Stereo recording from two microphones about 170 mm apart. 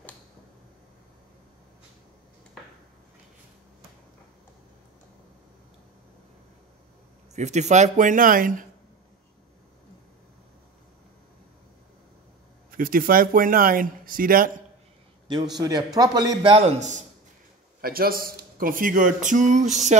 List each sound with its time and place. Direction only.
7.3 s speech: 45° right (ahead or behind)
12.7 s speech: 55° right (ahead or behind)
15.6 s a man's voice: 20° right (ahead or behind)
16.5 s a man's voice: 40° right (ahead or behind)
17.8 s speech: 60° right (ahead or behind); by 20.0 s 45° right (ahead or behind)